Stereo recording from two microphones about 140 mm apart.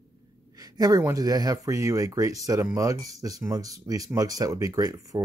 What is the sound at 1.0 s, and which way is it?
Speech, 25° right (ahead or behind).